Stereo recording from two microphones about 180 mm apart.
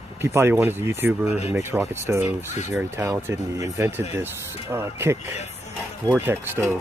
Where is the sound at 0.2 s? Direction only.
15° right (ahead or behind).